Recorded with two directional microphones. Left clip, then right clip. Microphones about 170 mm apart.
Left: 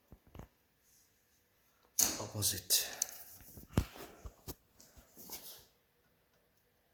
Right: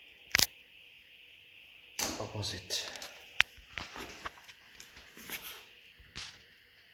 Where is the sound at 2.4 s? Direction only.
60° left (ahead or behind).